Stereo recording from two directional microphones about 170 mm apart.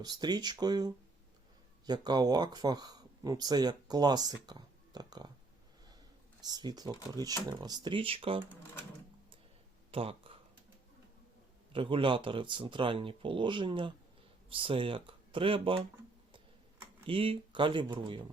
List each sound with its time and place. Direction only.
0.0 s speech: 25° right (ahead or behind)
6.4 s speech: 25° right (ahead or behind)
9.9 s a sound: 35° right (ahead or behind)
11.7 s speech: 30° right (ahead or behind)
17.1 s speech: 30° right (ahead or behind)